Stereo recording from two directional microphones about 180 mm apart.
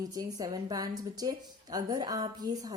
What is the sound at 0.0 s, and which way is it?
A woman's voice, 20° right (ahead or behind).